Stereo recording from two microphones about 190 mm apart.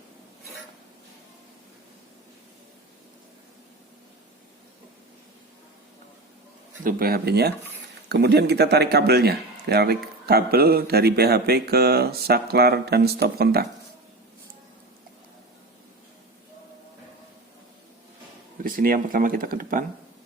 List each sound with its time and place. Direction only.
6.8 s speech: 50° right (ahead or behind)
18.6 s speech: 50° right (ahead or behind)